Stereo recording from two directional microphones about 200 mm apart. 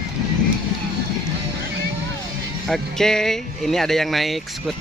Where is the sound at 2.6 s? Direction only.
Centre (ahead or behind).